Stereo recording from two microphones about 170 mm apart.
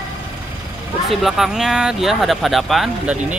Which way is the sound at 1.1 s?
Centre (ahead or behind).